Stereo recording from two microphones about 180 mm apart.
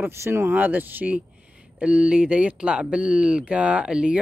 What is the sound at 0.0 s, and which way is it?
Speech, 15° right (ahead or behind).